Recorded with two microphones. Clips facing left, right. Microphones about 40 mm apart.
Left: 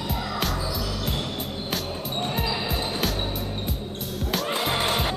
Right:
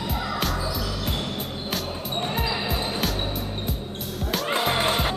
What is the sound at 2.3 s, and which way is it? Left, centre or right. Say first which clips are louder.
Music: right 1 dB; centre.